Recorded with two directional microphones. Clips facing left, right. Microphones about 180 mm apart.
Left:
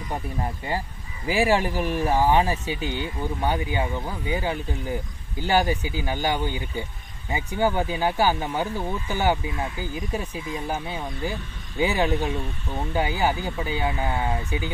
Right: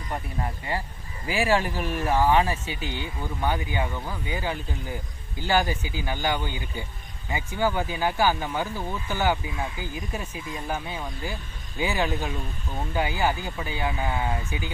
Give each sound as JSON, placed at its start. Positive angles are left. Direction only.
{"t": 1.2, "sound": "speech", "side_deg": 15}
{"t": 10.7, "sound": "speech", "side_deg": 20}